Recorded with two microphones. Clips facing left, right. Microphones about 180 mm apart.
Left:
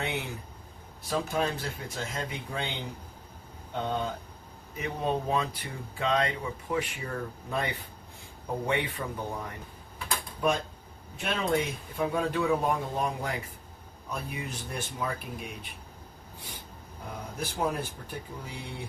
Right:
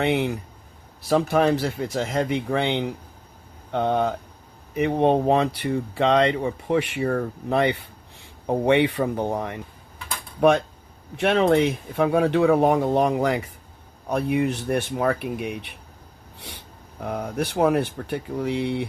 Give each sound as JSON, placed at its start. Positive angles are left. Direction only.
{"t": 0.0, "sound": "speech", "side_deg": -75}
{"t": 1.3, "sound": "speech", "side_deg": -80}
{"t": 10.4, "sound": "speech", "side_deg": -65}
{"t": 14.1, "sound": "speech", "side_deg": -65}
{"t": 17.0, "sound": "speech", "side_deg": -65}